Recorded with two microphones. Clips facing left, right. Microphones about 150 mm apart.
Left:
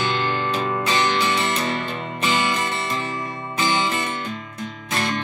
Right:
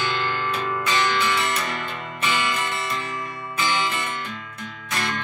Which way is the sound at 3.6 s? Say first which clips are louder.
Left 3 dB; 25° left (ahead or behind).